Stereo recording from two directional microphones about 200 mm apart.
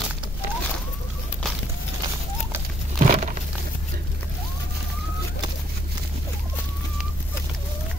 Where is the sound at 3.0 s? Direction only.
35° right (ahead or behind).